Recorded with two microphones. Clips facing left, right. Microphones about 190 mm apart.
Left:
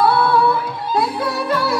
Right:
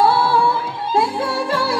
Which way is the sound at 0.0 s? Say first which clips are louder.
Left 1 dB; 30° right (ahead or behind).